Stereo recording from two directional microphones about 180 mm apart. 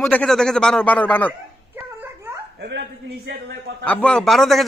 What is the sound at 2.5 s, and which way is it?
A man's voice, 70° right (ahead or behind).